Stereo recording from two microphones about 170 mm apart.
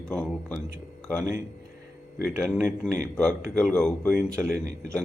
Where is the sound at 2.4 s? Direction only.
5° left (ahead or behind).